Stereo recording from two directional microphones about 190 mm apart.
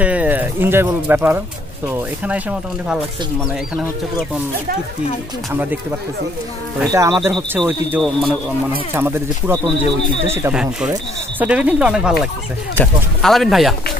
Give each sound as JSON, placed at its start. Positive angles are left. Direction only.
{"t": 0.0, "sound": "speech", "side_deg": -5}
{"t": 5.5, "sound": "speech", "side_deg": -10}
{"t": 8.0, "sound": "speech", "side_deg": 0}
{"t": 8.9, "sound": "speech", "side_deg": -10}